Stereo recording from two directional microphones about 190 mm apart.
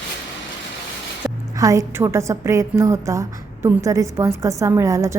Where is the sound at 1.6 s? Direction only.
15° right (ahead or behind).